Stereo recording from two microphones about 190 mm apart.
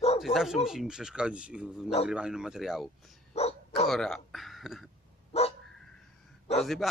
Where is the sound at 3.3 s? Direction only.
35° left (ahead or behind).